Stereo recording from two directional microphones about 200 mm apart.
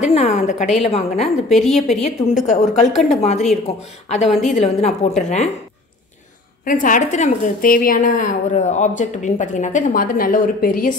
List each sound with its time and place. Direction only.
0.0 s a woman's voice: 35° left (ahead or behind)
1.2 s a woman's voice: centre (ahead or behind)
2.0 s a woman's voice: 35° left (ahead or behind)
4.3 s a woman's voice: centre (ahead or behind)
4.6 s a woman's voice: 35° left (ahead or behind)
6.6 s a woman's voice: 40° left (ahead or behind)